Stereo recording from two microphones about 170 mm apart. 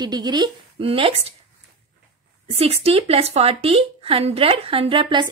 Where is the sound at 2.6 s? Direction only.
35° right (ahead or behind).